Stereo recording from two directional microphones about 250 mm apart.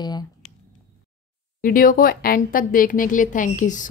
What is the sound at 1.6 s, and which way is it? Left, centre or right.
Speech, left.